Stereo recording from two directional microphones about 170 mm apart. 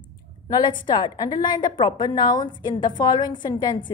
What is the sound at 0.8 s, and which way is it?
A woman's voice, 25° left (ahead or behind).